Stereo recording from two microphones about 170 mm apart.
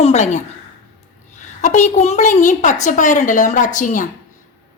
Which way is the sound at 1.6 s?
45° left (ahead or behind).